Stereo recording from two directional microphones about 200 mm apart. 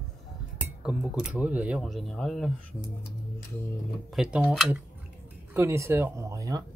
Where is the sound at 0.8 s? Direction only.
5° right (ahead or behind).